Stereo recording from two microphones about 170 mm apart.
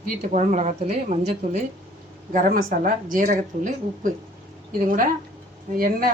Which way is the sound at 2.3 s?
55° right (ahead or behind).